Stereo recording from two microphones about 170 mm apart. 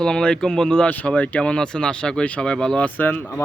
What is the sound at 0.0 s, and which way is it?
Speech, 5° left (ahead or behind).